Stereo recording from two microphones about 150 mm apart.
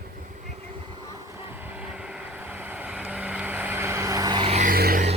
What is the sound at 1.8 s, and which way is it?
Vehicle, 5° right (ahead or behind).